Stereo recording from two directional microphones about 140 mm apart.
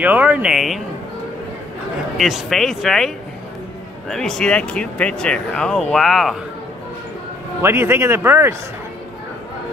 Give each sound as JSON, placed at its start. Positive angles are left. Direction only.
{"t": 0.0, "sound": "speech", "side_deg": -10}
{"t": 2.1, "sound": "speech", "side_deg": 0}
{"t": 4.1, "sound": "speech", "side_deg": 5}
{"t": 7.6, "sound": "speech", "side_deg": -20}